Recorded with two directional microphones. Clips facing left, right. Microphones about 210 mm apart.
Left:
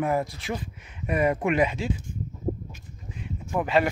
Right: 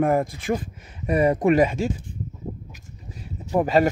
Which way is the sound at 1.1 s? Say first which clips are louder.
Right 5 dB; 35° right (ahead or behind).